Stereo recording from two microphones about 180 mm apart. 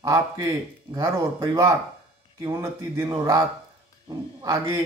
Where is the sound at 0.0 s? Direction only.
15° right (ahead or behind).